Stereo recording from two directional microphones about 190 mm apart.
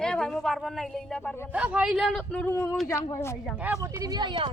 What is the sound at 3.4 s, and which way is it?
Speech, 5° right (ahead or behind).